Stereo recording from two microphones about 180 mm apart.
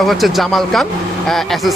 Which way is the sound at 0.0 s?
Centre (ahead or behind).